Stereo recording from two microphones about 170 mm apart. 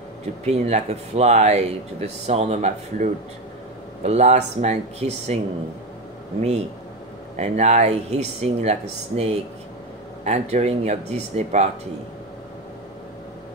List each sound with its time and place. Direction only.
0.5 s speech: 40° right (ahead or behind)
7.3 s speech: 40° right (ahead or behind)